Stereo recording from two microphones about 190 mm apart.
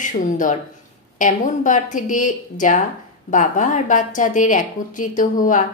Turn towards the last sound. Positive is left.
turn(degrees=45)  # may be behind; listen again after turning